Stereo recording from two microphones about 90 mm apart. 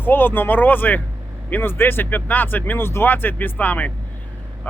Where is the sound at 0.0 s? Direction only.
20° left (ahead or behind).